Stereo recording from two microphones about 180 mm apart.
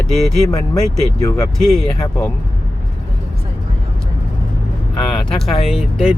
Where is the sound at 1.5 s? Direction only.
Centre (ahead or behind).